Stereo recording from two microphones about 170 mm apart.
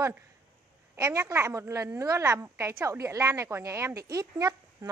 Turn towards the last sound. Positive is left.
turn(degrees=-20)  # may be behind; listen again after turning